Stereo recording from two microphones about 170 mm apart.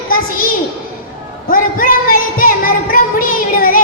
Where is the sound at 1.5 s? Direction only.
55° left (ahead or behind).